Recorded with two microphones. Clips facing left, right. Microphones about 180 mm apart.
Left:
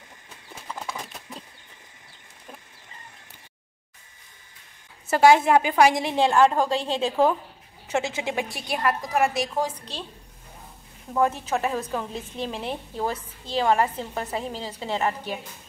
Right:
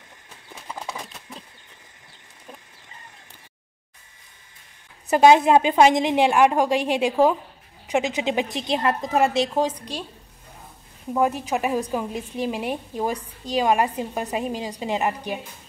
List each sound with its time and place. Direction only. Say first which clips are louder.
5.0 s a woman's voice: right 2 dB; 20° right (ahead or behind)
11.1 s a woman's voice: right 1 dB; 15° right (ahead or behind)